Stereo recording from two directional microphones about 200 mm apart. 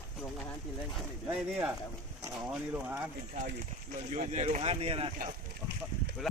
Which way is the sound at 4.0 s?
35° right (ahead or behind).